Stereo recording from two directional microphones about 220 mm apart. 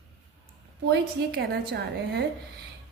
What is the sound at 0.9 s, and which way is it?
A woman's voice, 50° right (ahead or behind).